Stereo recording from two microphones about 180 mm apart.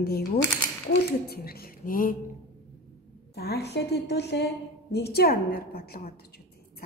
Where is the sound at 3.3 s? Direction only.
65° left (ahead or behind).